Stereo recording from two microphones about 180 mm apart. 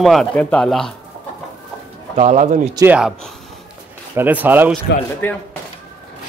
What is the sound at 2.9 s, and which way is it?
Speech, 5° right (ahead or behind).